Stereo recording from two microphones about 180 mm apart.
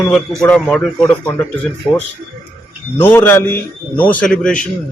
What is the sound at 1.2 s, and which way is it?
Speech, 15° left (ahead or behind).